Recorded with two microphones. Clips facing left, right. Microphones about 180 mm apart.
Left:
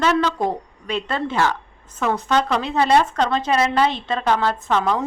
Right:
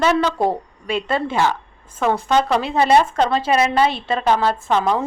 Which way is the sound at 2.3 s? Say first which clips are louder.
Right 2 dB; 10° right (ahead or behind).